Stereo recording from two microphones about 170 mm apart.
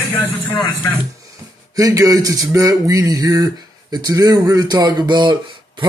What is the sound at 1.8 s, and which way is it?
A man's voice, 20° right (ahead or behind).